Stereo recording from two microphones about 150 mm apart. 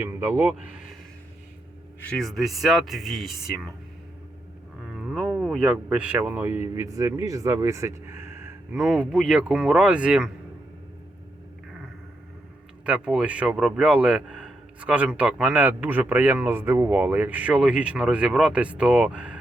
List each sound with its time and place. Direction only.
0.0 s a man's voice: 15° right (ahead or behind)
2.0 s speech: centre (ahead or behind)
4.8 s speech: 5° right (ahead or behind)
12.8 s a man's voice: 5° right (ahead or behind)